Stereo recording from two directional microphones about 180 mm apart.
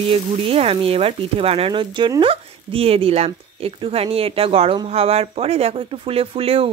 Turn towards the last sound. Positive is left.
turn(degrees=-30)  # may be behind; listen again after turning